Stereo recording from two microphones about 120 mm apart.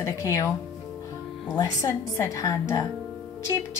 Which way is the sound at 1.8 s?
25° left (ahead or behind).